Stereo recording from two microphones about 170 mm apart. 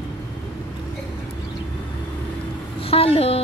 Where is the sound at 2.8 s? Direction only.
35° left (ahead or behind).